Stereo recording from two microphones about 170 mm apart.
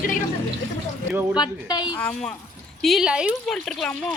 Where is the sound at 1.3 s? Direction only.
25° left (ahead or behind).